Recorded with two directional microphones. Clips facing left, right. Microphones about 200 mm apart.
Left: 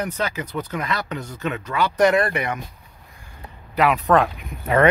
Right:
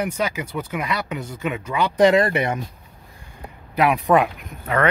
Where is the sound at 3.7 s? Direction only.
10° right (ahead or behind).